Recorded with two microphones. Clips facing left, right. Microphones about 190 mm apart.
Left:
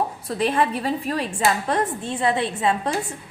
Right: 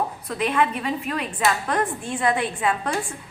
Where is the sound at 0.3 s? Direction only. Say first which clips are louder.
Left 1 dB; 30° left (ahead or behind).